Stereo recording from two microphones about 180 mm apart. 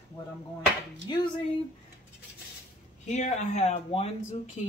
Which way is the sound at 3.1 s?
40° left (ahead or behind).